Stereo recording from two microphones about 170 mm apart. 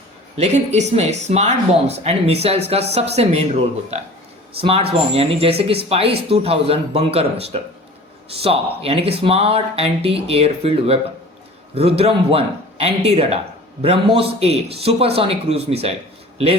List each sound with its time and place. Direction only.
0.3 s speech: 40° right (ahead or behind)
4.6 s speech: 35° right (ahead or behind)